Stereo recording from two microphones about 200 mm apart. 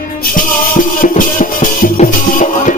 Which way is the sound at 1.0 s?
40° left (ahead or behind).